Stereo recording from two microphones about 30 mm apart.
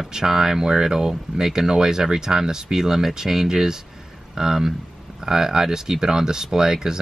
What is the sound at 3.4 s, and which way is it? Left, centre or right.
Speech, right.